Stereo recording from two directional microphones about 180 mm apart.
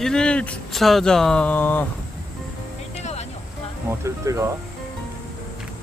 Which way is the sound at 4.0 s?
15° right (ahead or behind).